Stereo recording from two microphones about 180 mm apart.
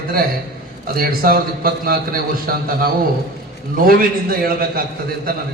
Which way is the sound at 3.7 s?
55° right (ahead or behind).